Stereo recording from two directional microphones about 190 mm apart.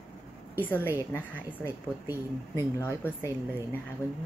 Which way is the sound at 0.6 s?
10° left (ahead or behind).